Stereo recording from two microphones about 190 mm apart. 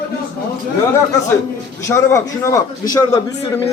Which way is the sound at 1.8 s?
15° left (ahead or behind).